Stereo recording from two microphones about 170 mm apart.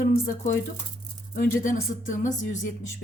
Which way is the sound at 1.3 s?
55° left (ahead or behind).